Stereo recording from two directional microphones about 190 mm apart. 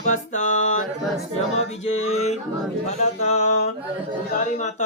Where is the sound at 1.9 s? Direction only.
35° left (ahead or behind).